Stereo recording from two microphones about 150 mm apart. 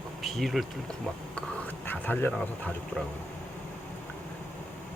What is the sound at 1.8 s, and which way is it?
Speech, 10° left (ahead or behind).